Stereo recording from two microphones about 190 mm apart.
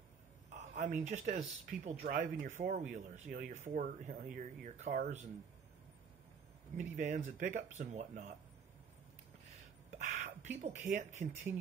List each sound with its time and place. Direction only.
0.5 s speech: 40° right (ahead or behind)
6.8 s speech: 40° right (ahead or behind)
9.9 s whispering: 40° right (ahead or behind)
10.6 s speech: 40° right (ahead or behind)